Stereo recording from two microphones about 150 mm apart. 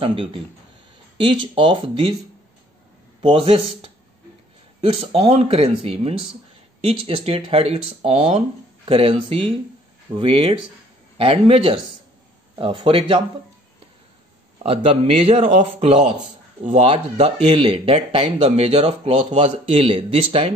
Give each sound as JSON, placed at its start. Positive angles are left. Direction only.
{"t": 0.0, "sound": "speech", "side_deg": -35}
{"t": 3.2, "sound": "speech", "side_deg": -35}
{"t": 14.6, "sound": "speech", "side_deg": -40}